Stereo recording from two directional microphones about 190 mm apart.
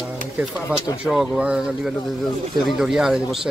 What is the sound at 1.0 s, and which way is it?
Speech, 5° right (ahead or behind).